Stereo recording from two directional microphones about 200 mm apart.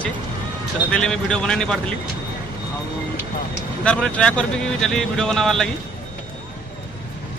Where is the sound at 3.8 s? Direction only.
5° left (ahead or behind).